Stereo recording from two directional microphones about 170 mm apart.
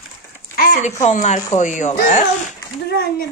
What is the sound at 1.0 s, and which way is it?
Speech, 45° left (ahead or behind).